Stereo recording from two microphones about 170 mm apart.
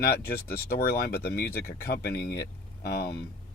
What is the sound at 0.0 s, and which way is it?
Speech, 65° left (ahead or behind).